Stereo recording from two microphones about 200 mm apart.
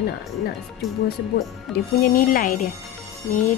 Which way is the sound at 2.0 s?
40° left (ahead or behind).